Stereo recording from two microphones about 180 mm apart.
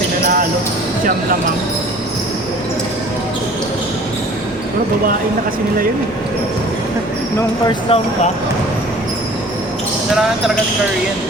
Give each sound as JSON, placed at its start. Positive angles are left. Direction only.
{"t": 7.7, "sound": "speech", "side_deg": 30}